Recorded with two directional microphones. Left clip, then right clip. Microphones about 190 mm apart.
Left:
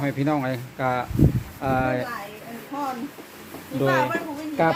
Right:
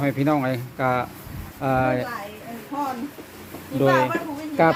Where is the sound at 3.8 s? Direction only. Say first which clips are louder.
Right 3 dB; 65° right (ahead or behind).